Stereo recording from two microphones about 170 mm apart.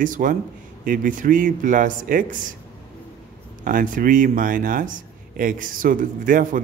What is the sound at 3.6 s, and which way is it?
Speech, 50° right (ahead or behind).